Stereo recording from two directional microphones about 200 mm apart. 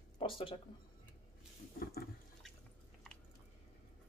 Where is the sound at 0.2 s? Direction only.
25° left (ahead or behind).